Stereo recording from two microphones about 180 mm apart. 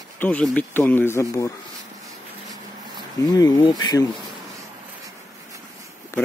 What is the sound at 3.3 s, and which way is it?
Speech, 20° left (ahead or behind).